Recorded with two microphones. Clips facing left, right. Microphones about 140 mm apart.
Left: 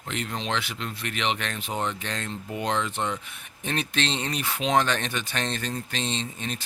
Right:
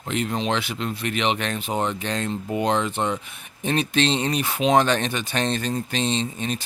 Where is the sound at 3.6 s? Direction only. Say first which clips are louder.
Right 7 dB; 15° right (ahead or behind).